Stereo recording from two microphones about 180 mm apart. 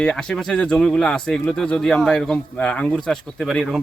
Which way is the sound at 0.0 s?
5° left (ahead or behind).